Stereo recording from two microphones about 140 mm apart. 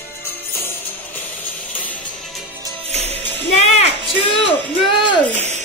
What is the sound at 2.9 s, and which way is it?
Music, 50° right (ahead or behind).